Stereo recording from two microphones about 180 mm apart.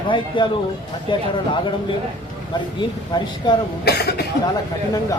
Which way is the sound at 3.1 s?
20° left (ahead or behind).